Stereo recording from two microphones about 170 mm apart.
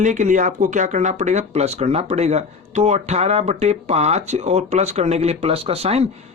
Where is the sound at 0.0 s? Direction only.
45° right (ahead or behind).